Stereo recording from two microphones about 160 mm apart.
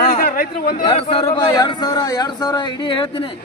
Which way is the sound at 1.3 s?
25° left (ahead or behind).